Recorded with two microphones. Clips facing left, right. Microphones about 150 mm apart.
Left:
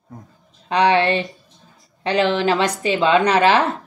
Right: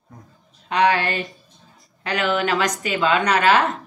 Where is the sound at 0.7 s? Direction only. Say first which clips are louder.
Left 3 dB; 30° left (ahead or behind).